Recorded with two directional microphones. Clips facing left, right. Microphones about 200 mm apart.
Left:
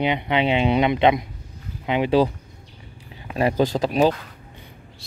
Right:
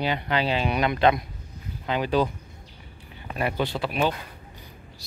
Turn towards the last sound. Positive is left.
turn(degrees=40)  # may be behind; listen again after turning